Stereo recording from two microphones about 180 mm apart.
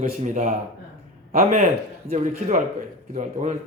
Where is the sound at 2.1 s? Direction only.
40° right (ahead or behind).